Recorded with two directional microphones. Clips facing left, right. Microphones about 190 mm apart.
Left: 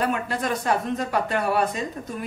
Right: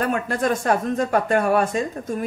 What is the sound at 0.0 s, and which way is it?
Speech, 50° right (ahead or behind).